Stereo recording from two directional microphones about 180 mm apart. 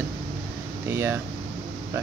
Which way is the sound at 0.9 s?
10° right (ahead or behind).